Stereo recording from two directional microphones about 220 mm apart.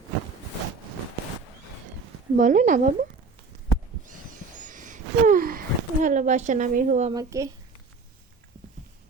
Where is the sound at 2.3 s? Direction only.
35° right (ahead or behind).